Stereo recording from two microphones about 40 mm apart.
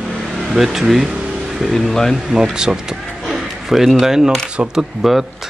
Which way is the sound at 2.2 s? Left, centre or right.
Centre.